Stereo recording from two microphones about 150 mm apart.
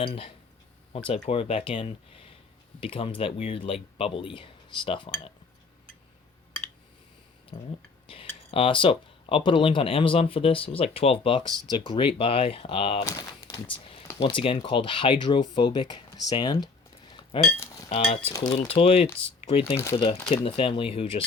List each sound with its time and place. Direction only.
0.0 s speech: 40° left (ahead or behind)
7.5 s a sound: 50° left (ahead or behind)
8.0 s speech: 35° left (ahead or behind)
14.2 s speech: 35° left (ahead or behind)